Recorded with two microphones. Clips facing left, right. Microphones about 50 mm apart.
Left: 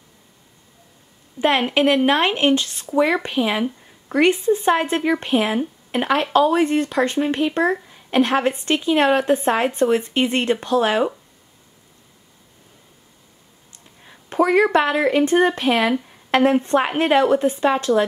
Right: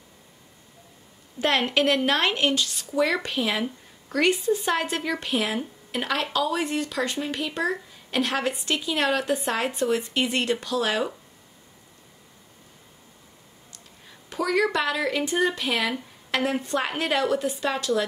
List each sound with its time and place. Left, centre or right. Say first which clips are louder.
1.4 s a woman's voice: left 5 dB; centre
13.7 s speech: left 4 dB; left